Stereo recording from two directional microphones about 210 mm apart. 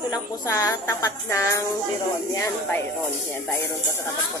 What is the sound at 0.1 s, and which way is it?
A woman's voice, 15° left (ahead or behind).